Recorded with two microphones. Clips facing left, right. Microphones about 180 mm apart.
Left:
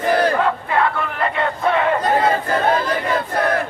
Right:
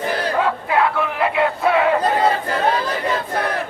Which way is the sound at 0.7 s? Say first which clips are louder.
Right 1 dB; 5° right (ahead or behind).